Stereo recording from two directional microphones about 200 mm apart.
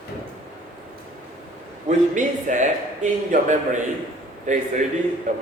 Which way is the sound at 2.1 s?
40° right (ahead or behind).